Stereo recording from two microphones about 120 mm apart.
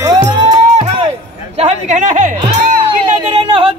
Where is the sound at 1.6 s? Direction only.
65° right (ahead or behind).